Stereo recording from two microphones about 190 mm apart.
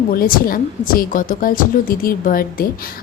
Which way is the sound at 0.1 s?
50° left (ahead or behind).